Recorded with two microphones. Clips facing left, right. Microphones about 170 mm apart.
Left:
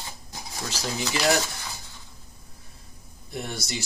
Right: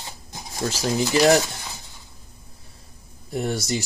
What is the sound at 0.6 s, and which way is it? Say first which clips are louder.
Speech: right 8 dB; 35° right (ahead or behind).